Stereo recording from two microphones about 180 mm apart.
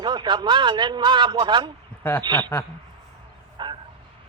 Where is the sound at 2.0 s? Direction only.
10° left (ahead or behind).